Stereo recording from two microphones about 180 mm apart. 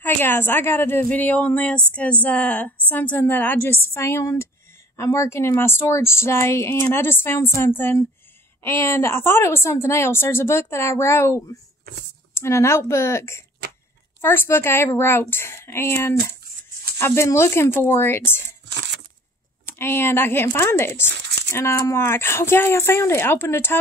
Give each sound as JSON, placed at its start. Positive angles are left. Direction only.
{"t": 0.0, "sound": "speech", "side_deg": 10}
{"t": 18.7, "sound": "a sound", "side_deg": -75}
{"t": 19.8, "sound": "speech", "side_deg": 15}
{"t": 21.1, "sound": "squish", "side_deg": -75}
{"t": 21.5, "sound": "speech", "side_deg": 15}